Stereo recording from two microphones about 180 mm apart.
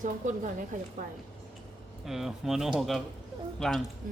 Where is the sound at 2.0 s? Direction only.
Centre (ahead or behind).